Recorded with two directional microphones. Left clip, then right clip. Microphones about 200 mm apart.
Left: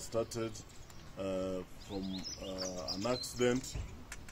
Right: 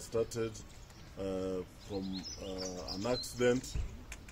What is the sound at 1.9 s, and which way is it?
Speech, 35° left (ahead or behind).